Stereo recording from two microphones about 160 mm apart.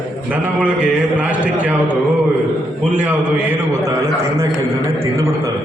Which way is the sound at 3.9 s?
20° right (ahead or behind).